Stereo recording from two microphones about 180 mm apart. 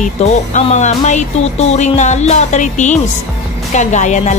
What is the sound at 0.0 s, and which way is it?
A woman's voice, 40° left (ahead or behind).